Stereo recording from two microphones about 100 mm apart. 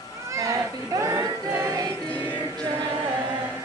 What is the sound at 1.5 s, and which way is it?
Music, 30° right (ahead or behind).